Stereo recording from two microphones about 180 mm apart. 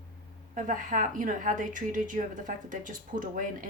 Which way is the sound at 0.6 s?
45° right (ahead or behind).